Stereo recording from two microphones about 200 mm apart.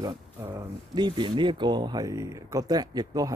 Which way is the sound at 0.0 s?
15° right (ahead or behind).